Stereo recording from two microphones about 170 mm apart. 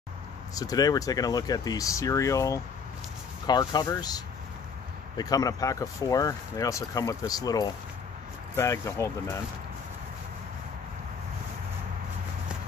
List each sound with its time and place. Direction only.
0.6 s speech: 20° left (ahead or behind)